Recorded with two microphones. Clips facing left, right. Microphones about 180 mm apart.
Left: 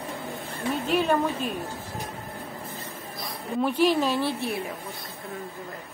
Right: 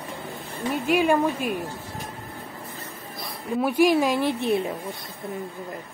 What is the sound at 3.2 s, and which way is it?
Speech, 10° right (ahead or behind).